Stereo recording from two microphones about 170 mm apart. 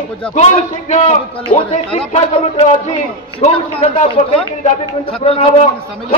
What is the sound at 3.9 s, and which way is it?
A man's voice, 45° left (ahead or behind).